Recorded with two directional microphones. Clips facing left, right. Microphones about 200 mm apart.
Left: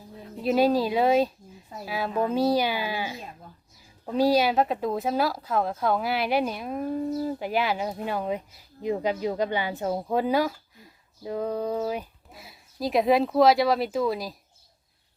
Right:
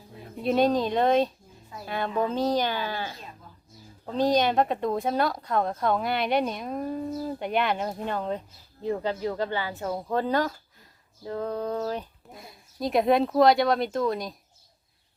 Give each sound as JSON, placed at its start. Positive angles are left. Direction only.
{"t": 0.4, "sound": "speech", "side_deg": 5}